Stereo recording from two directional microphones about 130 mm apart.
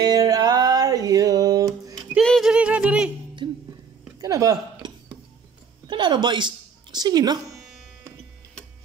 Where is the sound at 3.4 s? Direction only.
40° right (ahead or behind).